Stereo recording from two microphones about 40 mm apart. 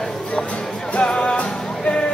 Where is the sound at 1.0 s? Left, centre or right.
Centre.